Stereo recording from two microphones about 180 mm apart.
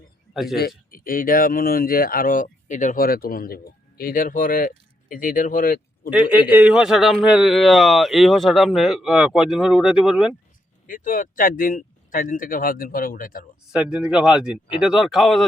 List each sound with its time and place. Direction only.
0.5 s speech: 55° left (ahead or behind)
6.1 s a man's voice: 10° right (ahead or behind)
10.8 s speech: 50° left (ahead or behind)
13.7 s a man's voice: 5° right (ahead or behind)